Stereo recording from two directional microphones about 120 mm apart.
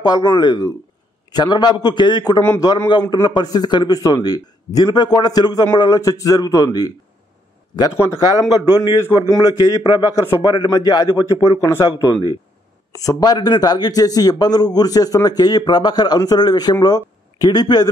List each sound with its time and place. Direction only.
0.0 s a man's voice: 35° left (ahead or behind)